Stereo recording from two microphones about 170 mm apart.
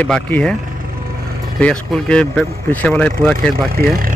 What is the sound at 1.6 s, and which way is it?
Speech, 5° left (ahead or behind).